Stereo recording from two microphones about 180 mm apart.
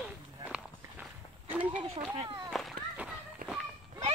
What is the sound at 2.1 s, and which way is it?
Speech, 25° right (ahead or behind).